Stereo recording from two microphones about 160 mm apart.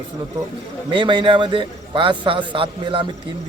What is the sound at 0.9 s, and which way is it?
A man's voice, 30° right (ahead or behind).